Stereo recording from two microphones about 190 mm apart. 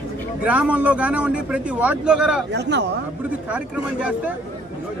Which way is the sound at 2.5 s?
65° right (ahead or behind).